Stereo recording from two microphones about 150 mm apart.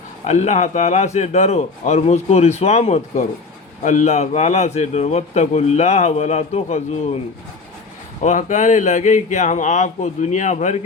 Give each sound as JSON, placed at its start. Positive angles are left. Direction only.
{"t": 0.3, "sound": "a man's voice", "side_deg": 50}
{"t": 8.2, "sound": "speech", "side_deg": 55}